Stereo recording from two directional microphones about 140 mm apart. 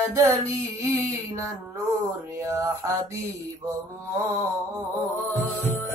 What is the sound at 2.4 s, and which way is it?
Mantra, 20° right (ahead or behind).